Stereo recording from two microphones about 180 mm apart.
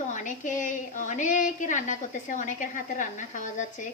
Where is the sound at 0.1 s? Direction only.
45° left (ahead or behind).